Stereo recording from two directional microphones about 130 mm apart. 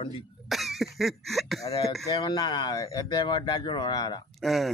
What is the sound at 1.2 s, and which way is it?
Speech, centre (ahead or behind).